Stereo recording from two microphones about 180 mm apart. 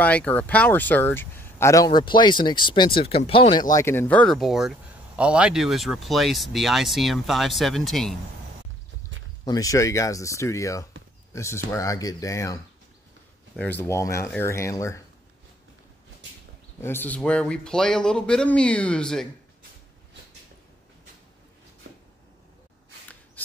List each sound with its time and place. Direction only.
0.0 s speech: 10° left (ahead or behind); by 3.6 s 30° left (ahead or behind)
3.7 s speech: 15° left (ahead or behind)
9.4 s speech: 20° left (ahead or behind)
13.6 s speech: 10° left (ahead or behind)
16.8 s speech: 10° left (ahead or behind)